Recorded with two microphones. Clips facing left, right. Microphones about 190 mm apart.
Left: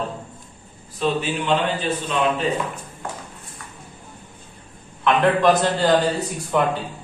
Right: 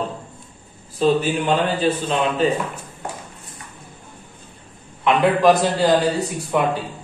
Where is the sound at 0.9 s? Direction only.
40° right (ahead or behind).